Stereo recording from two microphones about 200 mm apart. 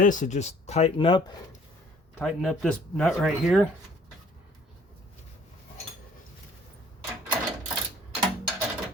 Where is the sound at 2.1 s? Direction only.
5° left (ahead or behind).